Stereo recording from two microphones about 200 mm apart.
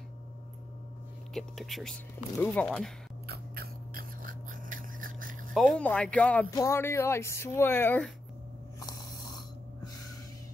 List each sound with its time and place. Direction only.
1.3 s speech: centre (ahead or behind)
3.3 s a sound: 50° right (ahead or behind)
5.5 s speech: centre (ahead or behind)
8.7 s ratchet: 20° left (ahead or behind)